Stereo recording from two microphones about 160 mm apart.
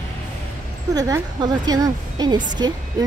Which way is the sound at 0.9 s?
20° right (ahead or behind).